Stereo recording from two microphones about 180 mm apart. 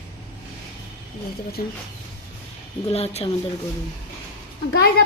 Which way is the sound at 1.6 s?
50° left (ahead or behind).